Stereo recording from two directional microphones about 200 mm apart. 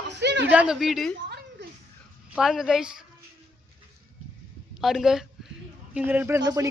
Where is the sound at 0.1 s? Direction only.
60° right (ahead or behind).